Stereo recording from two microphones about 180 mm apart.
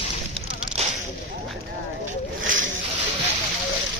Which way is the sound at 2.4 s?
90° right.